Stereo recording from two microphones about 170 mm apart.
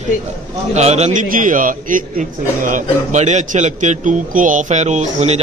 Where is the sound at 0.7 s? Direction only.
40° right (ahead or behind).